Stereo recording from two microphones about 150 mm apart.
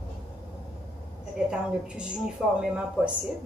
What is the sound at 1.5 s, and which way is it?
A woman's voice, 5° right (ahead or behind).